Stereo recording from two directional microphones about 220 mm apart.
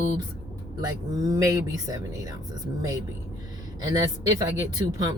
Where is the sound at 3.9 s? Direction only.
15° right (ahead or behind).